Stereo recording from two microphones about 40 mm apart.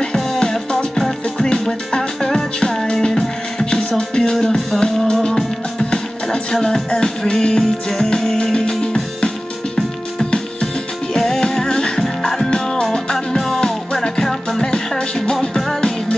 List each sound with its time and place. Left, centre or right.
0.1 s music: centre
9.8 s music: centre
12.4 s music: left